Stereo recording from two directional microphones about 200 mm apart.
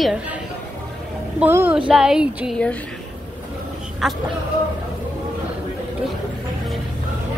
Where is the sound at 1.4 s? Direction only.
10° right (ahead or behind).